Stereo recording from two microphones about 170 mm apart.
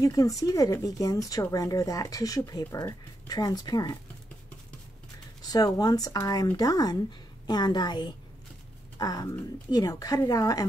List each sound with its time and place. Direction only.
0.0 s speech: 20° left (ahead or behind)
5.4 s speech: 20° left (ahead or behind)